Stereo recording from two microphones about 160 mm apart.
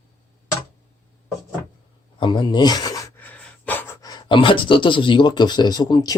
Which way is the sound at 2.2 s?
30° left (ahead or behind).